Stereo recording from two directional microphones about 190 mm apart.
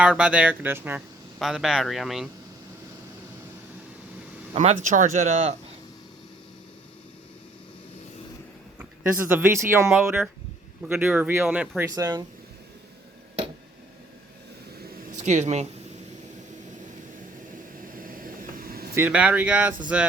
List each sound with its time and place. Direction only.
0.0 s speech: 5° right (ahead or behind)
4.5 s speech: 35° right (ahead or behind)
9.3 s speech: 15° right (ahead or behind)
9.9 s speech: 5° right (ahead or behind)
11.9 s speech: 20° right (ahead or behind)
14.8 s a sound: 45° right (ahead or behind)
17.9 s vehicle: 50° right (ahead or behind)
18.9 s speech: 10° right (ahead or behind)